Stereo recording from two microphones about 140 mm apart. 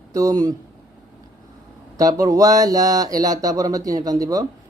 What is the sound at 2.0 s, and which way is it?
Speech, 25° right (ahead or behind).